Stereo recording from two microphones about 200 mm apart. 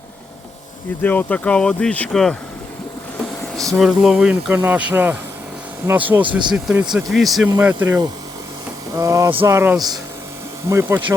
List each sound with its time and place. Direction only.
1.0 s speech: 5° left (ahead or behind)
3.4 s a sound: centre (ahead or behind)
3.8 s speech: centre (ahead or behind)